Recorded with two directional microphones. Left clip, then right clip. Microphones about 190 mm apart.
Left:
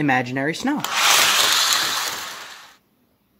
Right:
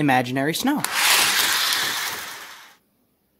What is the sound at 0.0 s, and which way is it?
Speech, 25° right (ahead or behind).